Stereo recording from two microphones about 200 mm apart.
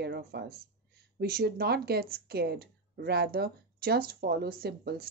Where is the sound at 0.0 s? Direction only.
55° right (ahead or behind).